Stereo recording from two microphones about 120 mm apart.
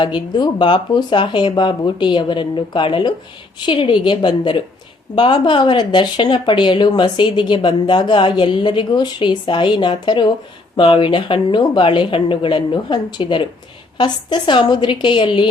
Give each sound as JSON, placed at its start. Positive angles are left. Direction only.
{"t": 0.0, "sound": "speech", "side_deg": 40}